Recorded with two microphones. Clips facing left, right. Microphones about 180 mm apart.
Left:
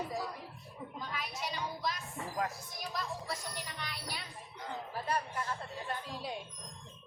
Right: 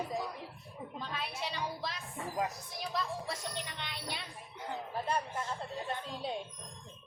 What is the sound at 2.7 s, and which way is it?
Speech, 30° right (ahead or behind).